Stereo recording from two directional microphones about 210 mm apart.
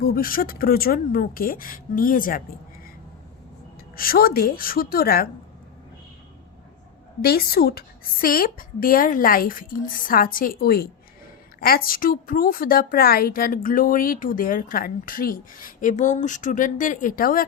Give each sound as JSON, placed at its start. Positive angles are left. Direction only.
{"t": 0.0, "sound": "a woman's voice", "side_deg": 45}
{"t": 3.9, "sound": "a woman's voice", "side_deg": 45}
{"t": 7.2, "sound": "a woman's voice", "side_deg": 45}